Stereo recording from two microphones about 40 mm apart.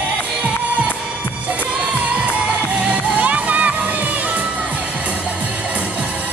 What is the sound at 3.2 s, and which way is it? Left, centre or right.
Music, right.